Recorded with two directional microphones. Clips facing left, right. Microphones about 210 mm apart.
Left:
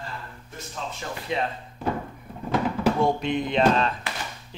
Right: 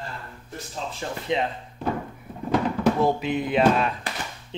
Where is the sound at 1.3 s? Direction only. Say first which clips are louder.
Right 3 dB; 20° right (ahead or behind).